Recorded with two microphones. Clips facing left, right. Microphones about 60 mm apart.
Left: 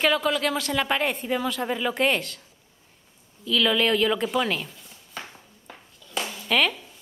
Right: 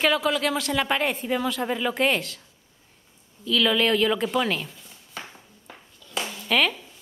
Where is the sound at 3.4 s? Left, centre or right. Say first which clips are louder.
Even; centre.